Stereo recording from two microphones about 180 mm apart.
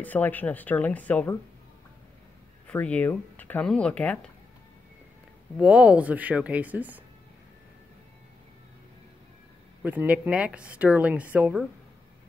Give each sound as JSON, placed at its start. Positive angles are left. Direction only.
{"t": 0.0, "sound": "speech", "side_deg": 10}
{"t": 2.7, "sound": "speech", "side_deg": 10}
{"t": 5.6, "sound": "speech", "side_deg": -5}
{"t": 9.8, "sound": "speech", "side_deg": -10}